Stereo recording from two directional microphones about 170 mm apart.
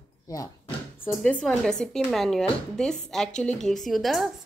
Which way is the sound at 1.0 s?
5° left (ahead or behind).